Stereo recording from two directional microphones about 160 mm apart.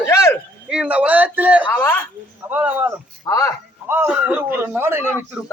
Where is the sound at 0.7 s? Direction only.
10° right (ahead or behind).